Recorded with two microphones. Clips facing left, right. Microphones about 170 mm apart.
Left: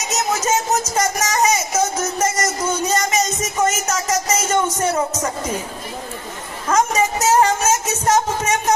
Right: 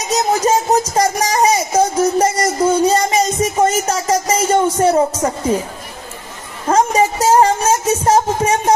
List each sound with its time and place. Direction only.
0.1 s speech: 35° right (ahead or behind)
0.9 s a sound: 30° right (ahead or behind)
6.7 s speech: 30° right (ahead or behind)